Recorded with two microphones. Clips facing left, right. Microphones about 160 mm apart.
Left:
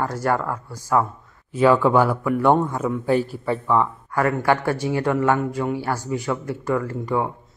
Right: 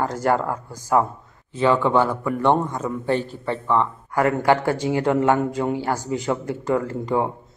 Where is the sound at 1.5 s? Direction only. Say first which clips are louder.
Left 2 dB; 10° left (ahead or behind).